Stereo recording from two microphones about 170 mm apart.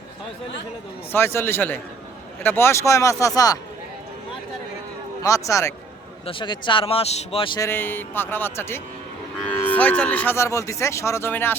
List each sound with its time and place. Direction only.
1.1 s speech: 15° left (ahead or behind)
5.2 s speech: 20° left (ahead or behind)
6.2 s speech: 30° left (ahead or behind)
7.7 s speech: 10° left (ahead or behind)